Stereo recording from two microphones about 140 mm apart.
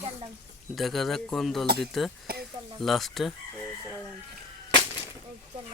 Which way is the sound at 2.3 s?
90° right.